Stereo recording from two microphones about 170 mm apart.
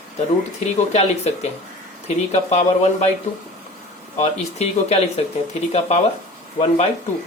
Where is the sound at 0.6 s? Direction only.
40° left (ahead or behind).